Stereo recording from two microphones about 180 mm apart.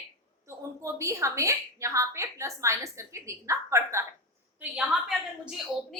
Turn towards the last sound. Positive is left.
turn(degrees=0)  # may be behind; listen again after turning